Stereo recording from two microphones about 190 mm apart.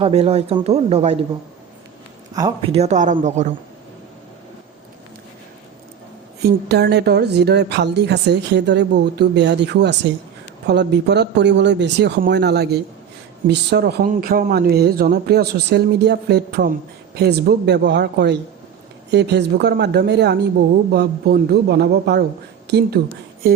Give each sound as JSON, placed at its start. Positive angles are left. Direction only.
{"t": 0.0, "sound": "speech", "side_deg": -35}
{"t": 2.3, "sound": "speech", "side_deg": -25}
{"t": 6.4, "sound": "a woman's voice", "side_deg": -60}